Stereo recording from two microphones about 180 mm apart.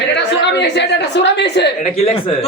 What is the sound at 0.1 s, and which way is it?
A woman's voice, 70° left (ahead or behind).